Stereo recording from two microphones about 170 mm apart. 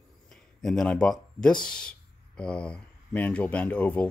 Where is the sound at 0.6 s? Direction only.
5° left (ahead or behind).